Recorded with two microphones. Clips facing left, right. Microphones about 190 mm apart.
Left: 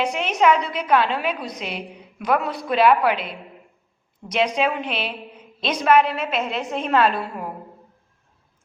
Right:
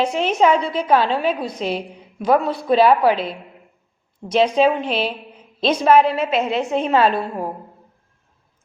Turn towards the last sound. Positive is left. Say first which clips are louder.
# right 3 dB
turn(degrees=-30)  # may be behind; listen again after turning